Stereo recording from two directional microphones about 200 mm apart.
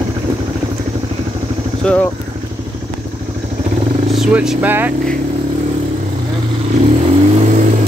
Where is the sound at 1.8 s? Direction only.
5° left (ahead or behind).